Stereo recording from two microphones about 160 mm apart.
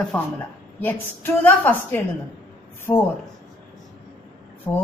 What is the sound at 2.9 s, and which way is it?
Speech, 30° left (ahead or behind).